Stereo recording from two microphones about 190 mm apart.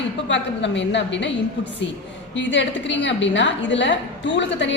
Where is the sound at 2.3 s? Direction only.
75° left (ahead or behind).